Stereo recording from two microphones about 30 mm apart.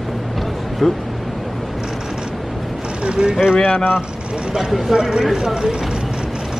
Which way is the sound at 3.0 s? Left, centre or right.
Right.